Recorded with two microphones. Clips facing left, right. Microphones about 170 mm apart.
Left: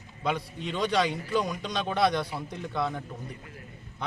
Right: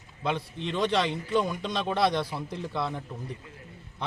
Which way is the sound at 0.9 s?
Centre (ahead or behind).